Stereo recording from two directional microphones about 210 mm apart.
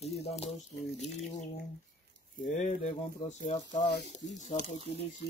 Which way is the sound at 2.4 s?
35° left (ahead or behind).